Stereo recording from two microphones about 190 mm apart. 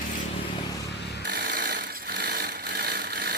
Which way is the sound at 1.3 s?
50° right (ahead or behind).